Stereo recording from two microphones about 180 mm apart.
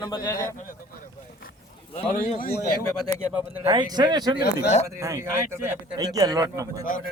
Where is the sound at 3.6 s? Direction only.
25° right (ahead or behind).